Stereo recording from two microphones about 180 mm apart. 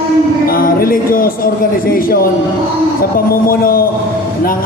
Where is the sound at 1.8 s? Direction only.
55° left (ahead or behind).